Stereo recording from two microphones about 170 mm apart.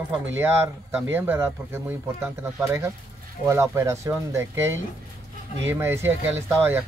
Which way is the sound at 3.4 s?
15° right (ahead or behind).